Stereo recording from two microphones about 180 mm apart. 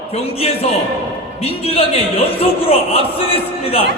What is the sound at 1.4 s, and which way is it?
A man's voice, 35° left (ahead or behind).